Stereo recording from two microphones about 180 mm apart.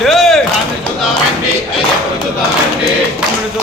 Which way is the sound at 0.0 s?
Centre (ahead or behind).